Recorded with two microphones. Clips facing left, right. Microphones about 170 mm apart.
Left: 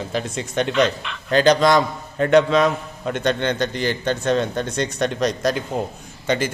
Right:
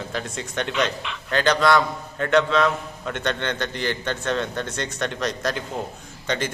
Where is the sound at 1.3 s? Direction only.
20° left (ahead or behind).